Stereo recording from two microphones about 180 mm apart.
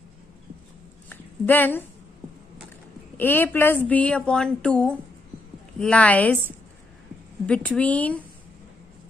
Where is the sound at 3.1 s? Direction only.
10° left (ahead or behind).